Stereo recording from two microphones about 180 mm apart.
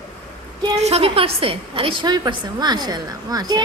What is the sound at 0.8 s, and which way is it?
A woman's voice, 35° right (ahead or behind).